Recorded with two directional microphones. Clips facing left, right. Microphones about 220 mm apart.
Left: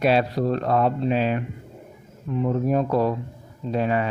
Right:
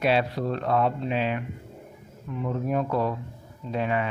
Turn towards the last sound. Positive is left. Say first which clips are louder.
# left 4 dB
turn(degrees=40)  # may be behind; listen again after turning